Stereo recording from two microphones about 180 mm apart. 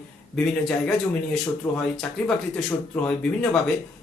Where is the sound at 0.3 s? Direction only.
Centre (ahead or behind).